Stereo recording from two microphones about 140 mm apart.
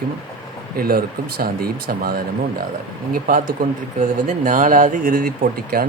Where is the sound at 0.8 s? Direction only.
90° right.